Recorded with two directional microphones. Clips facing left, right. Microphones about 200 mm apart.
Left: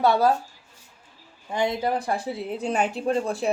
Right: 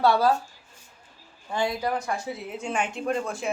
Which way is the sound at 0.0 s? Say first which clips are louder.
Left 1 dB; 20° left (ahead or behind).